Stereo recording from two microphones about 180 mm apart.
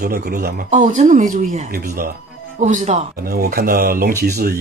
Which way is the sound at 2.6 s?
45° right (ahead or behind).